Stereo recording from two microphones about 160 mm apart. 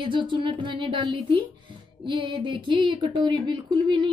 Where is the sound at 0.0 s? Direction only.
30° right (ahead or behind).